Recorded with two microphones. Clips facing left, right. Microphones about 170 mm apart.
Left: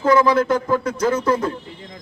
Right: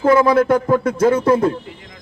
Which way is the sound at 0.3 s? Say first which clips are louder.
Right 4 dB; 55° right (ahead or behind).